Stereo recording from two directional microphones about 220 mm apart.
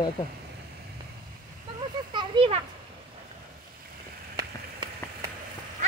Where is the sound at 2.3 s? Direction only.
20° right (ahead or behind).